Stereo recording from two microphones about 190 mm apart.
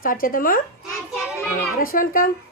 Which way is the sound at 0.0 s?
45° left (ahead or behind).